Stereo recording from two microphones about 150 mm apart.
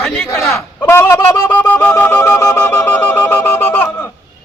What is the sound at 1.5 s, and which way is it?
Wind instrument, 10° left (ahead or behind).